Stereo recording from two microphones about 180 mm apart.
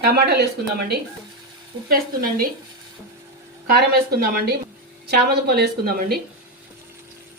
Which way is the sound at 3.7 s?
60° right (ahead or behind).